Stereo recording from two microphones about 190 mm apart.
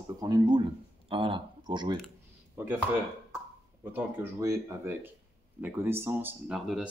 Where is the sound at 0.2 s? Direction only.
20° right (ahead or behind).